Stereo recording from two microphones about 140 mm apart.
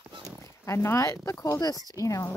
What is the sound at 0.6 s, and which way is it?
Speech, 20° left (ahead or behind).